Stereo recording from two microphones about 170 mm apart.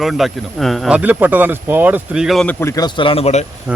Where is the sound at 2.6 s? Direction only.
20° left (ahead or behind); by 3.5 s 40° left (ahead or behind).